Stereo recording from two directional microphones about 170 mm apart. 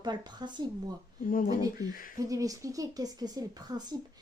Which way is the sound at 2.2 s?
20° right (ahead or behind).